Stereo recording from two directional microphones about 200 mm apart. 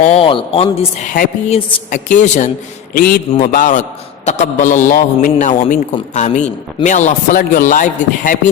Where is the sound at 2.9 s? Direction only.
45° left (ahead or behind).